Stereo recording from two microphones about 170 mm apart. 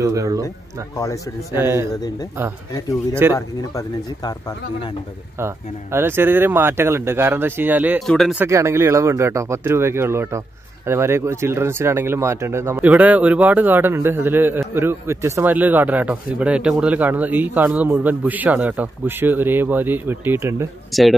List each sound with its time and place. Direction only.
0.0 s speech: 20° right (ahead or behind)
0.9 s speech: 20° left (ahead or behind)
1.6 s a man's voice: 15° right (ahead or behind)
2.7 s speech: 20° left (ahead or behind)
5.4 s a man's voice: 15° right (ahead or behind)
8.0 s speech: centre (ahead or behind)
8.4 s a man's voice: 15° right (ahead or behind)
20.9 s speech: centre (ahead or behind)